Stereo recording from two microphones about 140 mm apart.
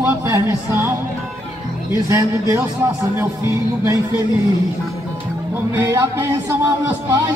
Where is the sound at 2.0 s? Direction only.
20° right (ahead or behind).